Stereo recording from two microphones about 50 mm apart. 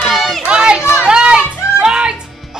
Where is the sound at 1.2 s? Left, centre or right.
Centre.